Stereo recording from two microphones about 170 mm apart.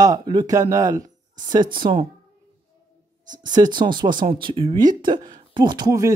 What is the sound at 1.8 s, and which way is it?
Speech, 30° right (ahead or behind).